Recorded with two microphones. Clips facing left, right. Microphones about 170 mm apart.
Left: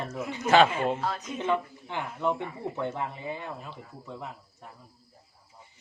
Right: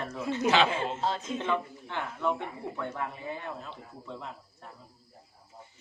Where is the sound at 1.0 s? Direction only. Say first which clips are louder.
Right 1 dB; 25° right (ahead or behind).